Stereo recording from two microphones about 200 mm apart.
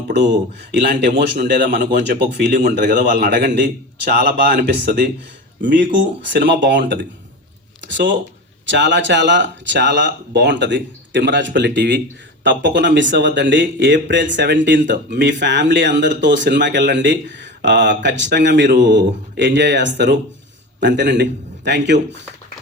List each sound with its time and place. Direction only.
1.3 s speech: 55° right (ahead or behind)
2.5 s a man's voice: 40° right (ahead or behind)
3.2 s speech: 60° right (ahead or behind)
5.6 s speech: 60° right (ahead or behind)